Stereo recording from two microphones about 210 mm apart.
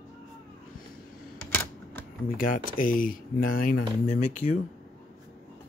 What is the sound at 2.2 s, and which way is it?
Speech, 40° left (ahead or behind).